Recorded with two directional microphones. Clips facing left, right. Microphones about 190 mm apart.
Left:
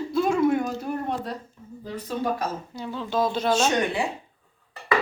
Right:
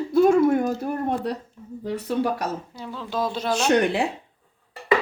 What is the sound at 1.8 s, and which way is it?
Speech, 70° right (ahead or behind).